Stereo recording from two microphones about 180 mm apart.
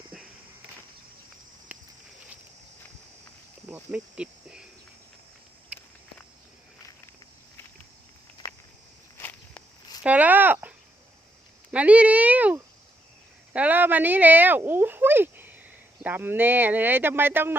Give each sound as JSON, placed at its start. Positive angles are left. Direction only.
{"t": 3.7, "sound": "speech", "side_deg": -5}
{"t": 5.7, "sound": "walk", "side_deg": -5}
{"t": 8.4, "sound": "walk", "side_deg": 20}
{"t": 10.0, "sound": "a sound", "side_deg": -10}
{"t": 11.7, "sound": "speech", "side_deg": -10}